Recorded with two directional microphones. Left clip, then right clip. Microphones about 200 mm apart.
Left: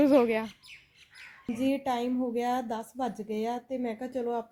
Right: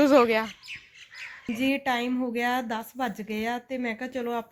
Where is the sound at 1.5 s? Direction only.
5° left (ahead or behind).